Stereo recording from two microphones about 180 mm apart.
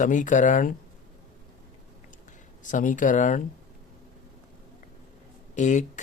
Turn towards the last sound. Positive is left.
turn(degrees=45)  # may be behind; listen again after turning